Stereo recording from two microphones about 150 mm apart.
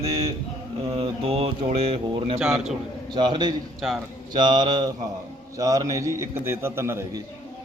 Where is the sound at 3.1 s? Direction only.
30° right (ahead or behind).